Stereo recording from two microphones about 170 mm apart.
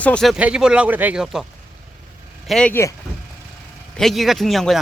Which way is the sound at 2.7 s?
15° left (ahead or behind).